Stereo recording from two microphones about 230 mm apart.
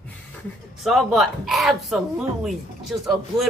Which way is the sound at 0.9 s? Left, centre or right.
Centre.